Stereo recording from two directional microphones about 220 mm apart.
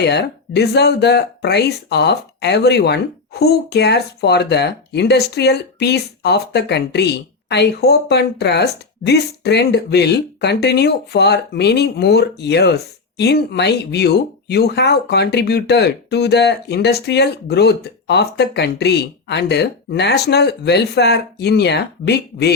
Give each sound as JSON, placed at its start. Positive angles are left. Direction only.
{"t": 0.0, "sound": "speech", "side_deg": 50}